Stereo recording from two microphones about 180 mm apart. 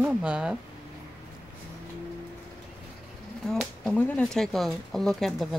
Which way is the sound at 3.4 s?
Centre (ahead or behind).